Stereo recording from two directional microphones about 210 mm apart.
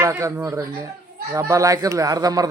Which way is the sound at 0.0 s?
15° right (ahead or behind).